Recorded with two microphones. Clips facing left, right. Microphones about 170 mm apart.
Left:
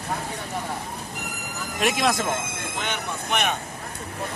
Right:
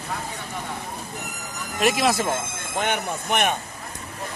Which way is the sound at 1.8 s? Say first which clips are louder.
Right 2 dB; centre (ahead or behind).